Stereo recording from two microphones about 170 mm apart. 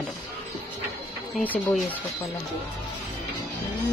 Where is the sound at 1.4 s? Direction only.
10° left (ahead or behind).